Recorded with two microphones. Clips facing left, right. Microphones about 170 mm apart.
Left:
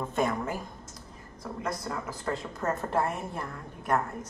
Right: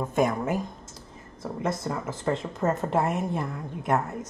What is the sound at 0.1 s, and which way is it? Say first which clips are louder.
Speech: right 5 dB; 15° right (ahead or behind).